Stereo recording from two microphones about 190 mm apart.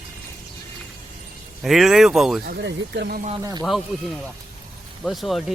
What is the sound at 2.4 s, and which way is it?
Speech, 65° right (ahead or behind).